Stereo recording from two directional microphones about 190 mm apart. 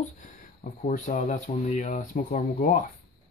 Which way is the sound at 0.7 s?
45° left (ahead or behind).